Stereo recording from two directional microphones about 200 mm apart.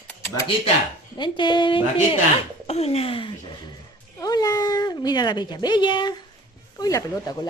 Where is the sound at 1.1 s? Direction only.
25° left (ahead or behind).